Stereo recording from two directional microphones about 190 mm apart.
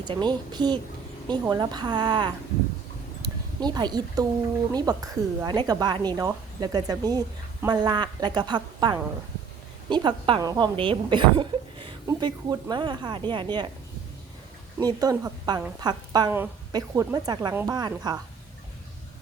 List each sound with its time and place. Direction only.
0.0 s speech: 25° right (ahead or behind)
3.2 s a sound: 20° right (ahead or behind)
4.7 s speech: 20° right (ahead or behind)
14.8 s speech: 20° right (ahead or behind)
17.7 s speech: 20° right (ahead or behind)